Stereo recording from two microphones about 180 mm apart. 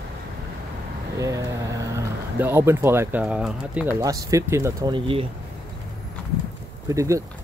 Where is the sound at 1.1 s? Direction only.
20° right (ahead or behind).